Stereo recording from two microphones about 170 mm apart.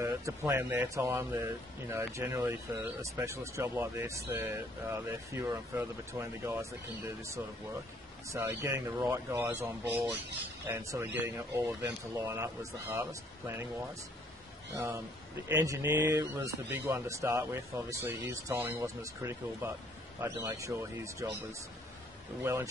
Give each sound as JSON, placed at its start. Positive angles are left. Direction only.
{"t": 0.0, "sound": "speech", "side_deg": -15}
{"t": 8.3, "sound": "speech", "side_deg": -15}
{"t": 14.7, "sound": "speech", "side_deg": -15}
{"t": 22.4, "sound": "speech", "side_deg": -15}